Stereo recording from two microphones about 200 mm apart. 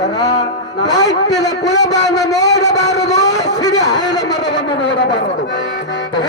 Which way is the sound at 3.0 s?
35° left (ahead or behind).